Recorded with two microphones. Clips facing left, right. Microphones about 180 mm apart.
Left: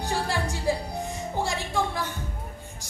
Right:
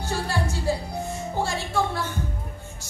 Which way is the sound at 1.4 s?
15° left (ahead or behind).